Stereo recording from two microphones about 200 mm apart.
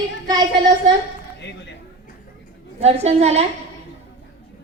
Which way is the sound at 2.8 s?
30° right (ahead or behind).